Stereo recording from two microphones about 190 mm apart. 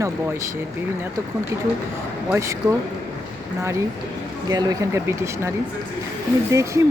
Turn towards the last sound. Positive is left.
turn(degrees=-15)  # may be behind; listen again after turning